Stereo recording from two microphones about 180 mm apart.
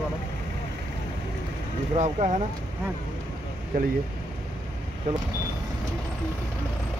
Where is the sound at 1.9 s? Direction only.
40° right (ahead or behind).